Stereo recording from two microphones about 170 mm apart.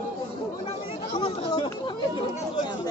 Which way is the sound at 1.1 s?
30° left (ahead or behind).